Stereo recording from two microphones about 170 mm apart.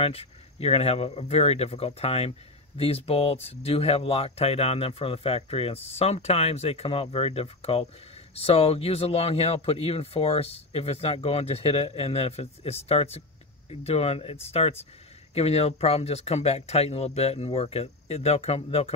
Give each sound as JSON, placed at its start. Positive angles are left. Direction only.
{"t": 0.0, "sound": "speech", "side_deg": 35}